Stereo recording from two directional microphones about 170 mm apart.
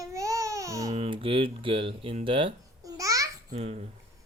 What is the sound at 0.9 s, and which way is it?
Speech, 35° right (ahead or behind).